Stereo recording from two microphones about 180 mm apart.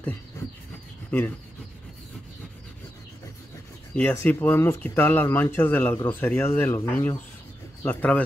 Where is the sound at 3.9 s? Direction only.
10° left (ahead or behind).